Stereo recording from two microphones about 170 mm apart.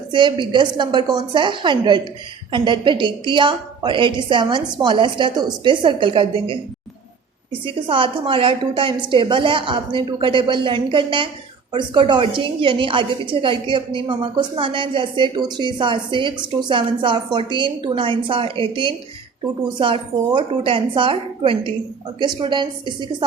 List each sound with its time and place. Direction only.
0.1 s a woman's voice: 25° right (ahead or behind)
7.6 s a woman's voice: 30° right (ahead or behind)